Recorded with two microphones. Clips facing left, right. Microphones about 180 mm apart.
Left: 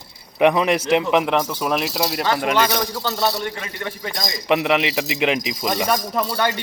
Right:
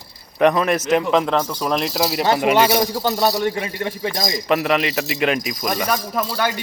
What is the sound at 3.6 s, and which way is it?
Speech, 20° right (ahead or behind).